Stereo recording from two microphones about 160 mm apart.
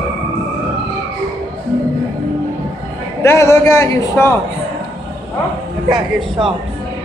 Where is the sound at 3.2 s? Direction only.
15° left (ahead or behind).